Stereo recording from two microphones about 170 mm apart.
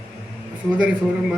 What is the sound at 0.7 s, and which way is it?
Speech, 5° right (ahead or behind).